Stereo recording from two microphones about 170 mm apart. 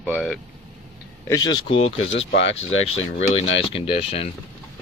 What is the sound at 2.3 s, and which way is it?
Speech, 90° left.